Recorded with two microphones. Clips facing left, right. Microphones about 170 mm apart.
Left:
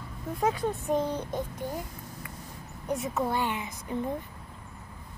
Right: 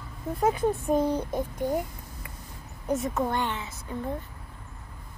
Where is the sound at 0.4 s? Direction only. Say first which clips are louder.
Right 4 dB; 10° right (ahead or behind).